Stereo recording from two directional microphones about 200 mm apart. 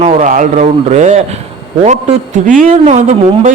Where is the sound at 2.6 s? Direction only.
40° right (ahead or behind).